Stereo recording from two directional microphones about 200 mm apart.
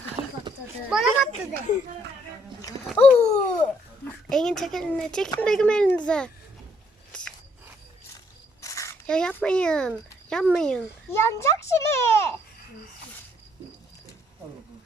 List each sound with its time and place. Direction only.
0.9 s a child's voice: centre (ahead or behind)
2.9 s dog: 10° left (ahead or behind)
4.3 s speech: 5° left (ahead or behind)
7.1 s a sound: 5° left (ahead or behind)
8.6 s a sound: 15° left (ahead or behind)
9.0 s a child's voice: 5° left (ahead or behind)